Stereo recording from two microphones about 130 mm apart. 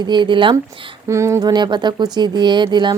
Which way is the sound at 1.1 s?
20° right (ahead or behind).